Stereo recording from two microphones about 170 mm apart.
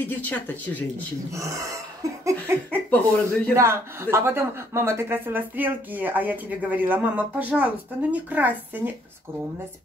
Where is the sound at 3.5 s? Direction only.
15° right (ahead or behind).